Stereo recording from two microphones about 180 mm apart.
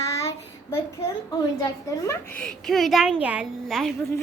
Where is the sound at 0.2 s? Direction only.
15° left (ahead or behind).